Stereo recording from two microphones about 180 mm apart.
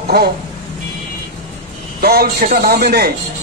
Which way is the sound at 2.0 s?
55° right (ahead or behind).